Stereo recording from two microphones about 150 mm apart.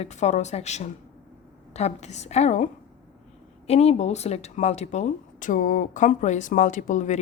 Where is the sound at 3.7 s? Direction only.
45° left (ahead or behind).